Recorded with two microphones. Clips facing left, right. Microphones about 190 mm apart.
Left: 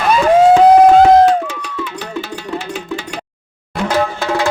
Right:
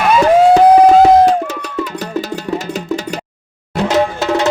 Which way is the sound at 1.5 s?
40° right (ahead or behind).